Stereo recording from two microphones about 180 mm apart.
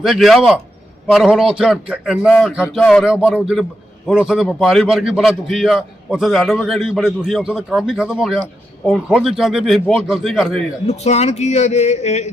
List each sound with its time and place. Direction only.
0.0 s a man's voice: centre (ahead or behind)
10.8 s speech: 40° left (ahead or behind)